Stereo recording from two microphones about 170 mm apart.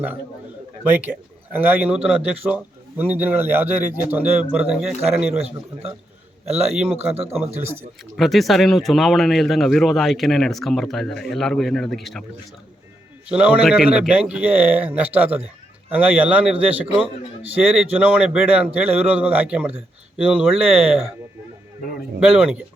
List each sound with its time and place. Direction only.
0.9 s a man's voice: 10° right (ahead or behind)
6.7 s a man's voice: 5° right (ahead or behind)
8.1 s speech: centre (ahead or behind)
13.2 s a man's voice: 5° right (ahead or behind)
22.2 s a man's voice: 5° right (ahead or behind)